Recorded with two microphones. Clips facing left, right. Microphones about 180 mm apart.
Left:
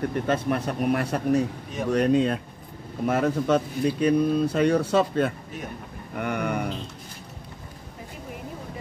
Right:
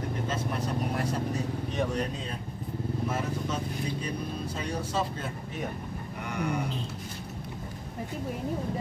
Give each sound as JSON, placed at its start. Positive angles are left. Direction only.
{"t": 0.3, "sound": "speech", "side_deg": 65}